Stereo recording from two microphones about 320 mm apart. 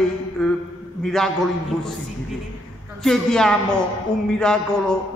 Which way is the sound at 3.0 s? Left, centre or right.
Centre.